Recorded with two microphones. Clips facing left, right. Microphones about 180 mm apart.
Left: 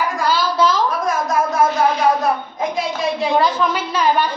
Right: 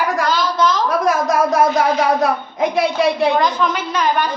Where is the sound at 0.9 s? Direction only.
75° right (ahead or behind).